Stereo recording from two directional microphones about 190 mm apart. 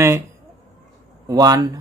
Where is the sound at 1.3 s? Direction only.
20° right (ahead or behind).